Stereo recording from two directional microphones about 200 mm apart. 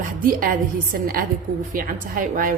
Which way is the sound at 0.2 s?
45° right (ahead or behind).